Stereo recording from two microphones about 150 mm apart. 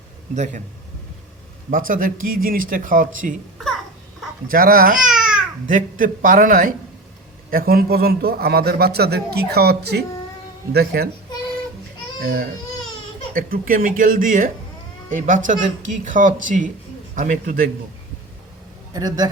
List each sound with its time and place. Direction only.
0.3 s a man's voice: 55° right (ahead or behind)
1.7 s a man's voice: 65° right (ahead or behind)
4.4 s speech: 75° right (ahead or behind)
4.9 s babbling: 5° right (ahead or behind)
5.6 s a man's voice: 65° right (ahead or behind)
7.5 s a man's voice: 85° right
12.2 s a man's voice: 75° right (ahead or behind)
18.9 s a man's voice: 25° right (ahead or behind)